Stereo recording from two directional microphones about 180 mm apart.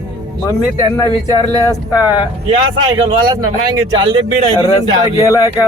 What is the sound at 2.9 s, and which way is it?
Speech, 25° right (ahead or behind).